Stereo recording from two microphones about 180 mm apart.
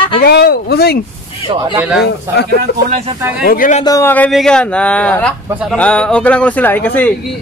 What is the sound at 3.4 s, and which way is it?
Speech, 50° left (ahead or behind).